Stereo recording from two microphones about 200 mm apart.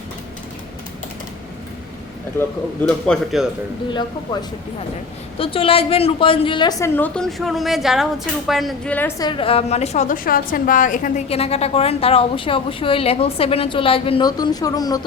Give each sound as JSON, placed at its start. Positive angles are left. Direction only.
{"t": 2.4, "sound": "a man's voice", "side_deg": 10}
{"t": 5.4, "sound": "a woman's voice", "side_deg": 25}